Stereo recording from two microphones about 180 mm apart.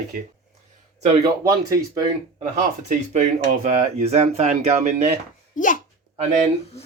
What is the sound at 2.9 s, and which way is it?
Speech, 45° right (ahead or behind).